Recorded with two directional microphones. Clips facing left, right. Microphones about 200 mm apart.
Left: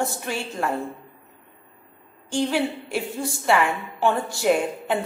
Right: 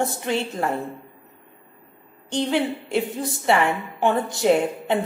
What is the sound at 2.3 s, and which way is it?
A woman's voice, 20° right (ahead or behind).